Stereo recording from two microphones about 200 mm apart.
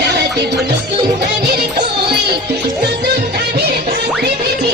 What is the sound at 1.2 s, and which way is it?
Music, 55° right (ahead or behind).